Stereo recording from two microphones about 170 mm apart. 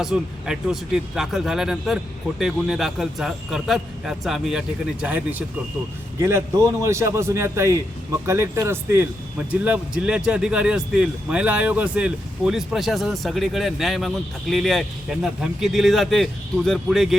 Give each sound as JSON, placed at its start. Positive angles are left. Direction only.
{"t": 0.0, "sound": "a man's voice", "side_deg": -5}